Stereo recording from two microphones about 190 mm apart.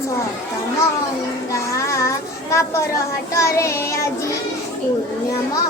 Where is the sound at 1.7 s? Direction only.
15° left (ahead or behind).